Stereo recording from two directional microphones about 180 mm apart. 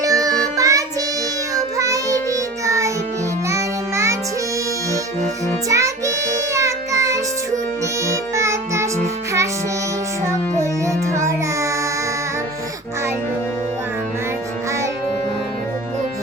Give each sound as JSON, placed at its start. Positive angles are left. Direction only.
{"t": 0.0, "sound": "music", "side_deg": -20}
{"t": 1.5, "sound": "child singing", "side_deg": -20}
{"t": 2.6, "sound": "music", "side_deg": -15}
{"t": 5.6, "sound": "child singing", "side_deg": -15}
{"t": 8.0, "sound": "music", "side_deg": -15}
{"t": 10.2, "sound": "music", "side_deg": -15}